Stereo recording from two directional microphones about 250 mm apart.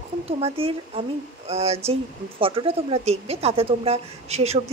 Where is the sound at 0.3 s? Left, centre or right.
Right.